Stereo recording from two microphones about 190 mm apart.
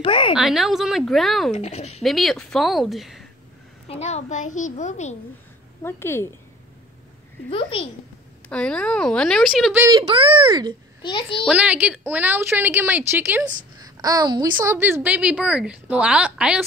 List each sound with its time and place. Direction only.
0.0 s a sound: 25° left (ahead or behind)
0.4 s speech: centre (ahead or behind)
1.5 s a child's voice: 35° left (ahead or behind)
2.0 s speech: centre (ahead or behind)
3.8 s a child's voice: 35° left (ahead or behind)
5.8 s a woman's voice: 10° left (ahead or behind)
7.4 s a child's voice: 30° left (ahead or behind)
8.5 s speech: 5° left (ahead or behind)
9.8 s speech: 25° right (ahead or behind)
11.0 s a child's voice: 25° left (ahead or behind)
11.2 s a woman's voice: centre (ahead or behind)